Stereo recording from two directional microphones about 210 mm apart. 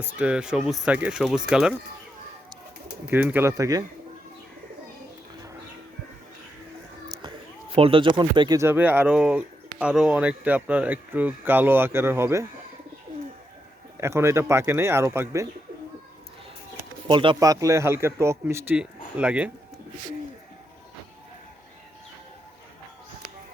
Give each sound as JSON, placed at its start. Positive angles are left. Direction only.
{"t": 0.0, "sound": "speech", "side_deg": -5}
{"t": 3.1, "sound": "speech", "side_deg": -10}
{"t": 7.1, "sound": "a sound", "side_deg": -20}
{"t": 7.8, "sound": "speech", "side_deg": -25}
{"t": 14.0, "sound": "speech", "side_deg": -10}
{"t": 17.1, "sound": "speech", "side_deg": -25}